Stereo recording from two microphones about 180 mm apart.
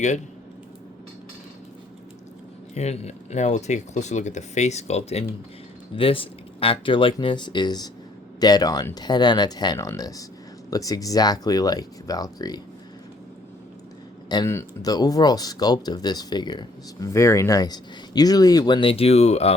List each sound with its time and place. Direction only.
2.7 s speech: 35° left (ahead or behind); by 12.5 s 20° left (ahead or behind)
14.3 s speech: 20° left (ahead or behind); by 19.5 s 35° left (ahead or behind)